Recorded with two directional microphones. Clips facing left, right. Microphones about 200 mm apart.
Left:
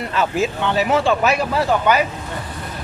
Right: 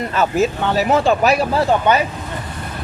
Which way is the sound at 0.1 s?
45° right (ahead or behind).